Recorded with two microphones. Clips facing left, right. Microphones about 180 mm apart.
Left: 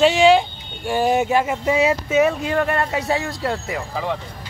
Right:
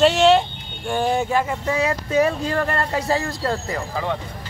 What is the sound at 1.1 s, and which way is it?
Speech, 20° left (ahead or behind).